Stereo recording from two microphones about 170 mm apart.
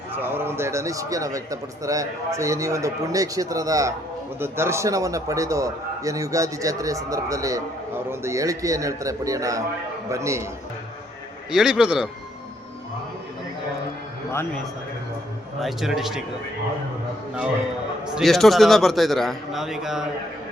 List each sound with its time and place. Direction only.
0.2 s a man's voice: 15° right (ahead or behind)
11.5 s a man's voice: 5° right (ahead or behind)
14.3 s a man's voice: 15° left (ahead or behind)
15.6 s a man's voice: centre (ahead or behind)
18.1 s a man's voice: centre (ahead or behind)